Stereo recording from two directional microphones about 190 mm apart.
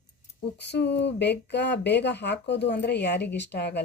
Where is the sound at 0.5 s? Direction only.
65° left (ahead or behind).